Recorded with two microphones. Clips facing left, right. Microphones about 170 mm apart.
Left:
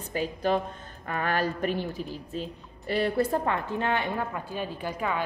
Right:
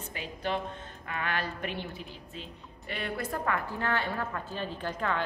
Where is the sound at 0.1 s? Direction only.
40° left (ahead or behind).